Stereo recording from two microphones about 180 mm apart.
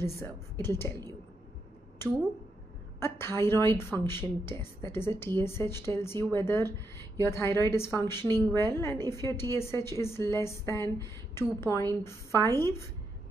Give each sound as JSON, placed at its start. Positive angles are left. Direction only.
{"t": 0.0, "sound": "a woman's voice", "side_deg": 15}
{"t": 3.0, "sound": "a woman's voice", "side_deg": 15}